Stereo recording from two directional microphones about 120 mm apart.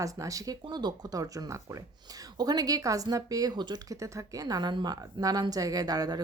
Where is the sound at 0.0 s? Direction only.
30° right (ahead or behind).